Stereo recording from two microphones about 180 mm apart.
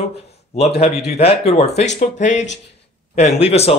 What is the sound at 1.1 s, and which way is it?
Speech, 35° left (ahead or behind).